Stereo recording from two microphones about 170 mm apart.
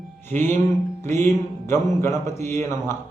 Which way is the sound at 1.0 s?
15° left (ahead or behind).